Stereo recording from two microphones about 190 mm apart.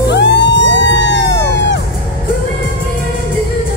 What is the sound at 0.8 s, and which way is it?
Vehicle, 85° right.